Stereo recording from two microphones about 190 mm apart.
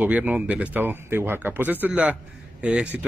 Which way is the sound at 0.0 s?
5° right (ahead or behind).